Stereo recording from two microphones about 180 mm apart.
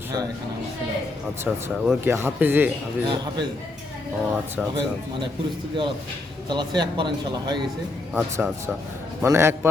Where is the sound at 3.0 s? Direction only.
25° right (ahead or behind).